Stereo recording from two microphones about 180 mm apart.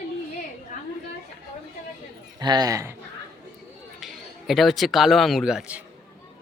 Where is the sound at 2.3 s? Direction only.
20° right (ahead or behind).